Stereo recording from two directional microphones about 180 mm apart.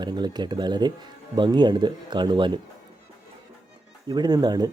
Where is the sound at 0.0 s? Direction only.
25° right (ahead or behind).